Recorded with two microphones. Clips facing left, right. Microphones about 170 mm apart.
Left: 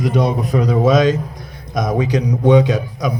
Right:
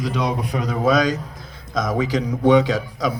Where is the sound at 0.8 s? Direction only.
25° left (ahead or behind).